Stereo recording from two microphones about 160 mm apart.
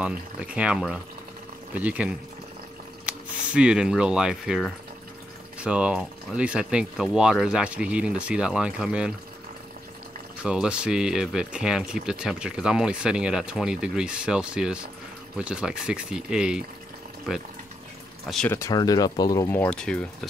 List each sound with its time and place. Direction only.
0.0 s speech: 5° right (ahead or behind)
3.5 s speech: 5° right (ahead or behind)
10.4 s speech: 5° right (ahead or behind)
18.5 s speech: 20° left (ahead or behind); by 20.2 s 5° left (ahead or behind)